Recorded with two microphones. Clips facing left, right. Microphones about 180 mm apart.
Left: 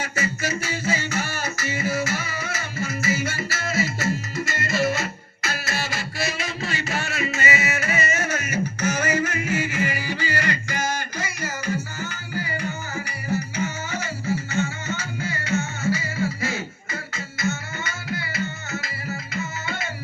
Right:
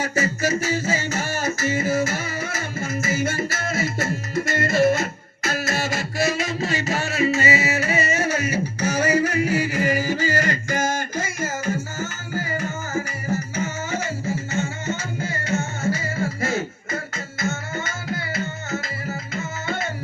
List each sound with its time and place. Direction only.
0.0 s music: 40° right (ahead or behind)